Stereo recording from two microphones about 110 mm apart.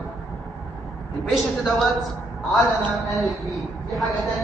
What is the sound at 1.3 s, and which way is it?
Speech, centre (ahead or behind).